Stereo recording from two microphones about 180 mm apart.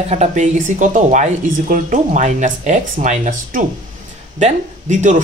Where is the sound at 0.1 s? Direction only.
40° right (ahead or behind).